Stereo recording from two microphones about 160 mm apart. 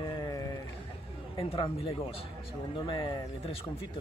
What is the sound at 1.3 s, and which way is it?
A man's voice, 35° left (ahead or behind).